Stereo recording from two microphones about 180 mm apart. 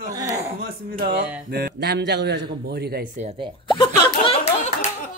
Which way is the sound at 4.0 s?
35° left (ahead or behind).